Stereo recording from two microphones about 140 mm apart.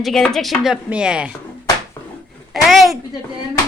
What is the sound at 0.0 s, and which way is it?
A woman's voice, centre (ahead or behind).